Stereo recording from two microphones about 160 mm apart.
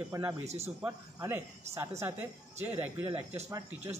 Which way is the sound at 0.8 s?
15° right (ahead or behind).